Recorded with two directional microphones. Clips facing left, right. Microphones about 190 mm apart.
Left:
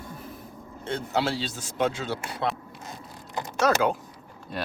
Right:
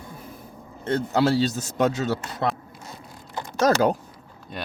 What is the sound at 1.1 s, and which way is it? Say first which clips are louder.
Speech: right 7 dB; 45° right (ahead or behind).